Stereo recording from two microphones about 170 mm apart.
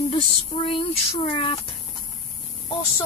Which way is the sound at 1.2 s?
30° left (ahead or behind).